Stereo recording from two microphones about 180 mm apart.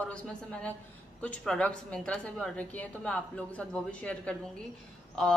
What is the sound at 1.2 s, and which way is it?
A woman's voice, 5° left (ahead or behind).